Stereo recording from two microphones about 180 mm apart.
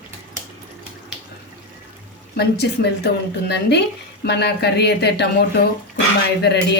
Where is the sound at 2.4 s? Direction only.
65° left (ahead or behind).